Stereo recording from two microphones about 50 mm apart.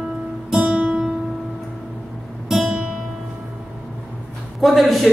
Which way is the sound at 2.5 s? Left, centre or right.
Centre.